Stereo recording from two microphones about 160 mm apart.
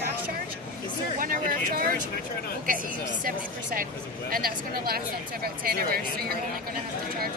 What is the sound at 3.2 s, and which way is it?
Speech, 60° right (ahead or behind).